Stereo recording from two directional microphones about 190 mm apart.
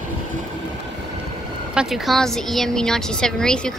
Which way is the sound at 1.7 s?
5° right (ahead or behind).